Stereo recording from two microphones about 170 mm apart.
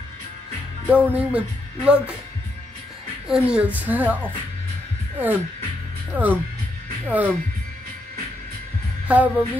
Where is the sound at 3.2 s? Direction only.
5° right (ahead or behind).